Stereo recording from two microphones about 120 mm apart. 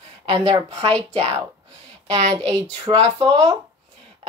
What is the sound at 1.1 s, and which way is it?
Speech, 55° right (ahead or behind).